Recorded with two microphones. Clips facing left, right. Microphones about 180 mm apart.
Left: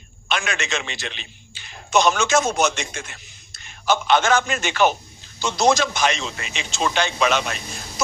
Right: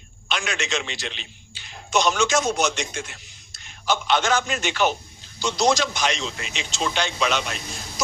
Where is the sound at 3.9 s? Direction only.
50° left (ahead or behind).